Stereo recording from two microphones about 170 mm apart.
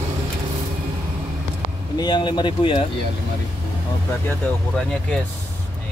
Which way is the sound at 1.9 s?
25° left (ahead or behind).